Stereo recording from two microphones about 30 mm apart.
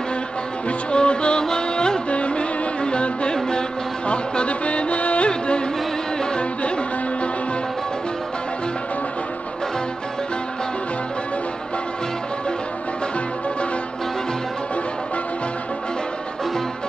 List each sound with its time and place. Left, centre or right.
0.9 s music: left
1.4 s music of bollywood: left
2.0 s music: left